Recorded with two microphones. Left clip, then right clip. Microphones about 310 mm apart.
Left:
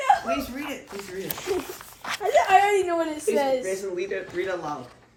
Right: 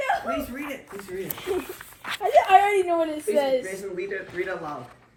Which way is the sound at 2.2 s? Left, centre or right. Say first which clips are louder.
Right 2 dB; left.